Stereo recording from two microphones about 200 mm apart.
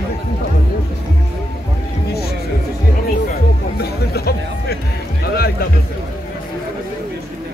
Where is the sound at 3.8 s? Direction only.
50° left (ahead or behind).